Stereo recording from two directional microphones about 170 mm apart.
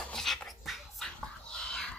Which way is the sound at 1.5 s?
5° left (ahead or behind).